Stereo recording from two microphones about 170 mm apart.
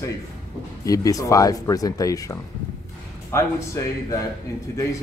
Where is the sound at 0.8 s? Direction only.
20° left (ahead or behind).